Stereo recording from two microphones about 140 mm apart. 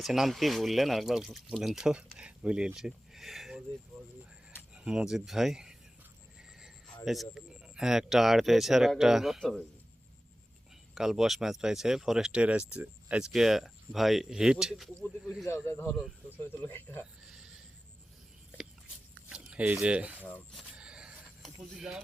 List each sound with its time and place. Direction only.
0.0 s speech: centre (ahead or behind)
4.7 s speech: 5° right (ahead or behind)
7.0 s speech: centre (ahead or behind)
10.9 s speech: 5° right (ahead or behind)
15.4 s speech: 20° left (ahead or behind)
17.2 s a sound: 5° right (ahead or behind)
19.3 s speech: 10° right (ahead or behind)
20.5 s vehicle: 5° right (ahead or behind)